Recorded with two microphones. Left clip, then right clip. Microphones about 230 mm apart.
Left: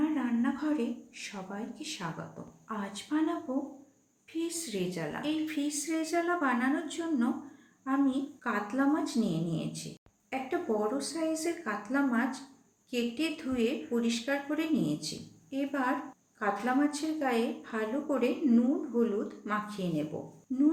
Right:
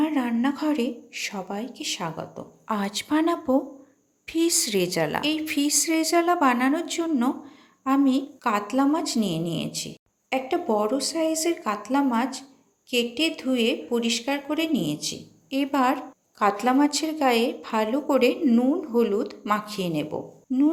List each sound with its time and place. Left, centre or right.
0.0 s a woman's voice: right
4.4 s a woman's voice: right